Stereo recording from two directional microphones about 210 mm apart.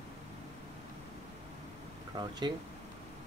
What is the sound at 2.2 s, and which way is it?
Speech, 20° right (ahead or behind).